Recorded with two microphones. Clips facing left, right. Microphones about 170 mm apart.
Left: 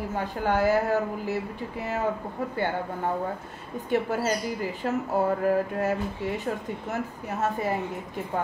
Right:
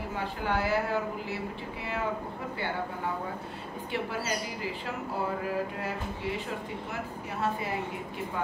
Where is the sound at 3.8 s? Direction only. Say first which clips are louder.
Left 8 dB; 50° left (ahead or behind).